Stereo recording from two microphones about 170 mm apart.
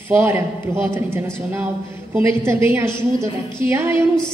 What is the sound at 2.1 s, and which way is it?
A woman's voice, 15° right (ahead or behind).